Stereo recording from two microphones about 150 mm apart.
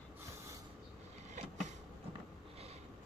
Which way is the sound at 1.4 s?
50° right (ahead or behind).